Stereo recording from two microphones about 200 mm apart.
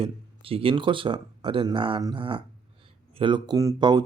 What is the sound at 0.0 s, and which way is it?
Speech, 30° right (ahead or behind).